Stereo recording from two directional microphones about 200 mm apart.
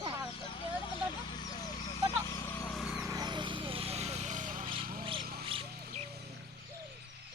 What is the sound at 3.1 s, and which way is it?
Vehicle, 20° right (ahead or behind).